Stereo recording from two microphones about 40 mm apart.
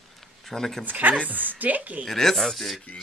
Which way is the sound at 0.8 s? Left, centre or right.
Right.